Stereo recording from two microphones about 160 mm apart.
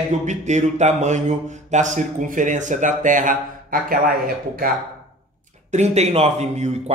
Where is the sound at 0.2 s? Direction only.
50° right (ahead or behind).